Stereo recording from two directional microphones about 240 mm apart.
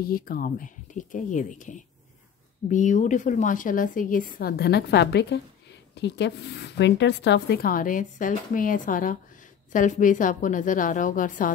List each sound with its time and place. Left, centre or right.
0.0 s a woman's voice: left